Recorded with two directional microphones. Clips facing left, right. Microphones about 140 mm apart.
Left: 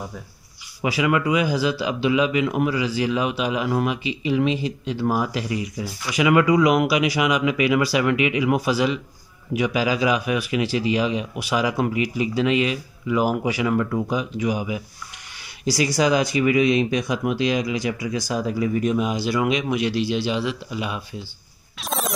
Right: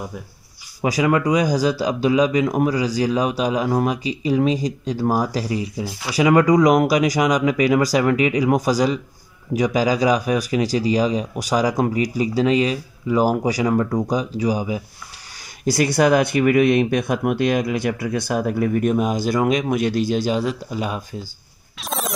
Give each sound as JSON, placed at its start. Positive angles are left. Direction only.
{"t": 0.8, "sound": "a man's voice", "side_deg": -40}
{"t": 15.6, "sound": "speech", "side_deg": -55}
{"t": 21.7, "sound": "a sound", "side_deg": 0}